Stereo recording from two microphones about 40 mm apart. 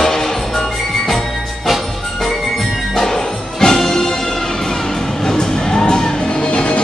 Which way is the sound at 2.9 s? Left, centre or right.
Centre.